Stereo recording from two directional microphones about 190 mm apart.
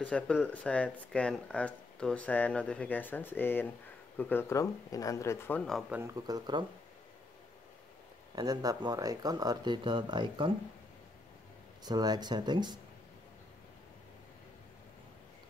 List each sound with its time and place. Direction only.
0.0 s speech: 5° left (ahead or behind)
5.7 s speech: centre (ahead or behind)
5.9 s speech: 15° right (ahead or behind)
8.4 s speech: 20° right (ahead or behind)
11.8 s speech: 20° right (ahead or behind)